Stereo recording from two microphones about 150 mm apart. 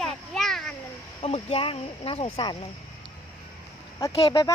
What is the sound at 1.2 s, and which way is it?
Speech, 40° left (ahead or behind).